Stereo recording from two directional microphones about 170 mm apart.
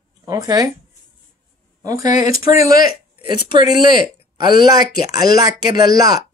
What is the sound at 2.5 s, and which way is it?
Speech, 55° left (ahead or behind).